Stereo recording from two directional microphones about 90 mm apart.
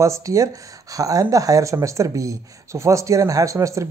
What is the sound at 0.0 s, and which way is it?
Speech, 35° right (ahead or behind).